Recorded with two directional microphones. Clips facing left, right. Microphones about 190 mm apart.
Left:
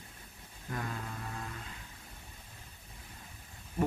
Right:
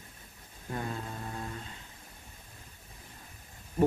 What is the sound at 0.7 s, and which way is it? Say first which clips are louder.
Speech: right 3 dB; 30° right (ahead or behind).